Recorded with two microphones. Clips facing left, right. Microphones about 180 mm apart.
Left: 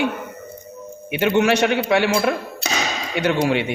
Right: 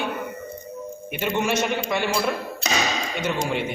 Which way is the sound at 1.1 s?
75° left (ahead or behind).